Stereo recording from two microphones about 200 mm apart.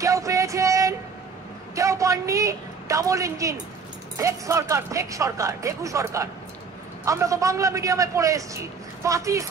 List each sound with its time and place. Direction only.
0.0 s music: 15° right (ahead or behind)
1.8 s a sound: 15° right (ahead or behind)
4.2 s a man's voice: 15° right (ahead or behind)